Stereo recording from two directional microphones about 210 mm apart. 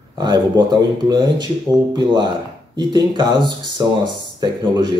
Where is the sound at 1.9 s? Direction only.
20° right (ahead or behind).